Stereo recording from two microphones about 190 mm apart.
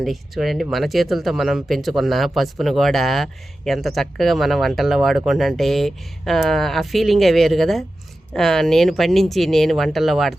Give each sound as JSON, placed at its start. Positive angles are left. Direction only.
{"t": 0.0, "sound": "speech", "side_deg": 0}